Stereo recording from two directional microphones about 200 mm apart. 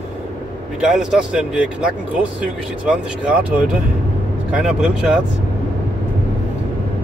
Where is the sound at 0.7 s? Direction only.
5° right (ahead or behind).